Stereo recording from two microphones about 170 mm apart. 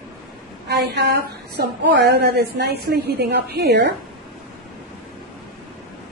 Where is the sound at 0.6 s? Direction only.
80° right.